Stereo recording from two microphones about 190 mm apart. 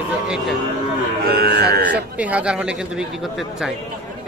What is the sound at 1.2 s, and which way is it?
Speech, 55° right (ahead or behind).